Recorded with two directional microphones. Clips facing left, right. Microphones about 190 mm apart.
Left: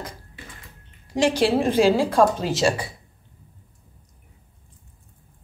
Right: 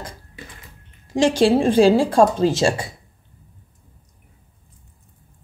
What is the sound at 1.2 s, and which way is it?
A woman's voice, 25° right (ahead or behind).